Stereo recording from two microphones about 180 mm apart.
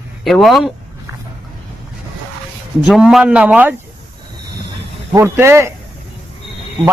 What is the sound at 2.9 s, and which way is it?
Speech, 5° right (ahead or behind).